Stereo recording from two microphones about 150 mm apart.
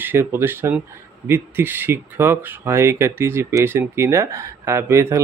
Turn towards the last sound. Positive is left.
turn(degrees=-15)  # may be behind; listen again after turning